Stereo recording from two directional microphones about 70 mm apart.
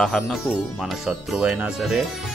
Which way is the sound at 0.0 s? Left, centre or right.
Centre.